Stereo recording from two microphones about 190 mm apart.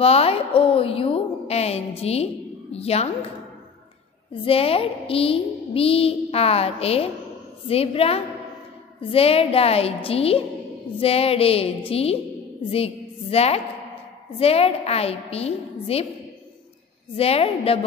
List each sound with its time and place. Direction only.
0.0 s a woman's voice: 30° left (ahead or behind)
4.3 s a woman's voice: 30° left (ahead or behind)
17.1 s a woman's voice: 30° left (ahead or behind)